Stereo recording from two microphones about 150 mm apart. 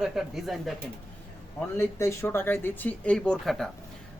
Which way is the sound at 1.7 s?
20° left (ahead or behind).